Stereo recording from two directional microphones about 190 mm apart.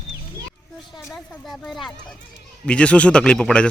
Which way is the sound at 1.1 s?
Centre (ahead or behind).